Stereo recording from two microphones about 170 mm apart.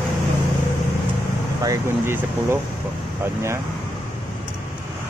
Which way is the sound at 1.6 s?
15° right (ahead or behind).